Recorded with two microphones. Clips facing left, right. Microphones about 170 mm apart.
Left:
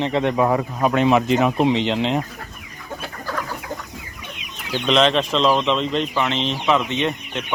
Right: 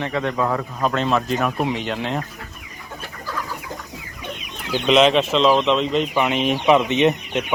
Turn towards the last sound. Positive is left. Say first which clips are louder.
# right 5 dB
turn(degrees=-20)  # may be behind; listen again after turning